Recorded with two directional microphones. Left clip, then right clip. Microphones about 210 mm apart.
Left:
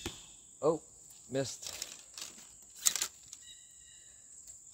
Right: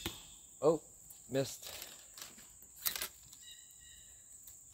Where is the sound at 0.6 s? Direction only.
10° left (ahead or behind).